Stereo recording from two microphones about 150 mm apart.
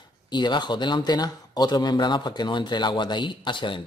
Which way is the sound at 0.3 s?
30° left (ahead or behind).